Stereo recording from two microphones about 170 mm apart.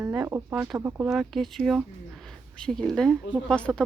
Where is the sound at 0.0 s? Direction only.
15° right (ahead or behind).